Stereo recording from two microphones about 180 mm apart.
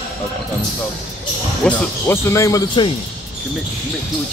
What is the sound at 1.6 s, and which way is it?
Speech, 10° left (ahead or behind).